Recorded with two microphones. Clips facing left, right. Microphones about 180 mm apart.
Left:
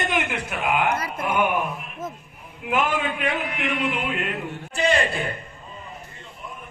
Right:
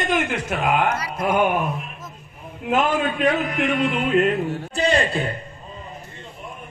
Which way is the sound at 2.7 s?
40° right (ahead or behind).